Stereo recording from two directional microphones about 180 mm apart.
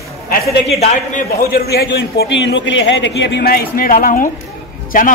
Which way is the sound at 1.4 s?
60° left (ahead or behind).